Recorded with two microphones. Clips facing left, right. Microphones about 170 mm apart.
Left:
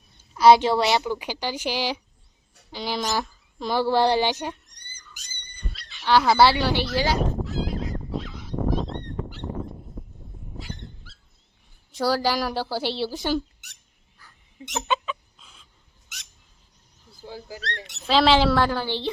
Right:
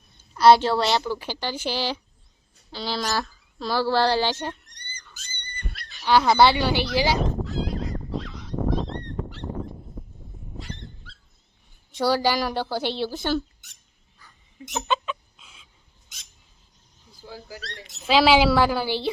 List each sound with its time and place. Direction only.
0.3 s speech: 10° left (ahead or behind)
4.6 s rodents: 70° right (ahead or behind)
5.5 s a sound: 60° right (ahead or behind)
6.1 s speech: centre (ahead or behind)
7.2 s fowl: centre (ahead or behind)
10.0 s a sound: centre (ahead or behind)
10.6 s dog: 5° left (ahead or behind)
11.9 s speech: centre (ahead or behind)
14.8 s chicken: centre (ahead or behind)
17.2 s speech: 20° left (ahead or behind)
18.0 s a woman's voice: 5° right (ahead or behind)